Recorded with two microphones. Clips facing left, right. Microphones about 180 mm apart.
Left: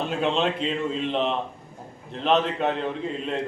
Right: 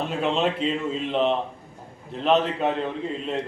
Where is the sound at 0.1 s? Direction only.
Centre (ahead or behind).